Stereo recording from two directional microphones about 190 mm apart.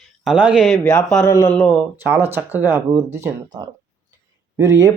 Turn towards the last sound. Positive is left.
turn(degrees=-15)  # may be behind; listen again after turning